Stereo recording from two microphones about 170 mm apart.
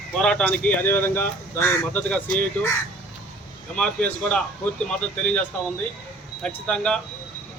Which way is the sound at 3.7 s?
5° left (ahead or behind).